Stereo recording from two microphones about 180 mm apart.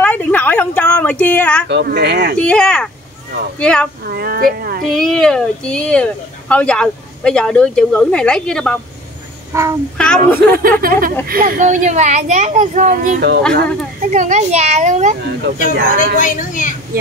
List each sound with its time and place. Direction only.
0.0 s a sound: 10° left (ahead or behind)
1.7 s speech: 70° right (ahead or behind)
2.3 s a woman's voice: 5° left (ahead or behind)
4.1 s speech: 55° right (ahead or behind)
4.9 s a woman's voice: centre (ahead or behind)
9.5 s child singing: 15° right (ahead or behind)
9.9 s a woman's voice: 5° left (ahead or behind)
10.4 s a child's voice: 55° right (ahead or behind)
16.2 s a woman's voice: 45° left (ahead or behind)